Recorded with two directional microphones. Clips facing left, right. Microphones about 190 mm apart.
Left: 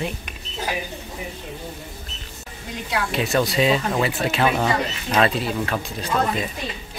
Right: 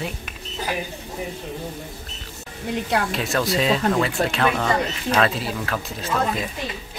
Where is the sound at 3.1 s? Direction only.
Centre (ahead or behind).